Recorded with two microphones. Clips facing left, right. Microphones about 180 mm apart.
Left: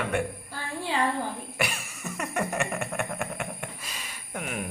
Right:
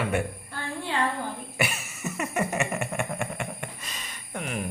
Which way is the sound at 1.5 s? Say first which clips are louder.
Right 1 dB; centre (ahead or behind).